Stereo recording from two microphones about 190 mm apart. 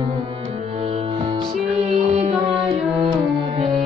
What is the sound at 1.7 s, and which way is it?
Music, 30° right (ahead or behind).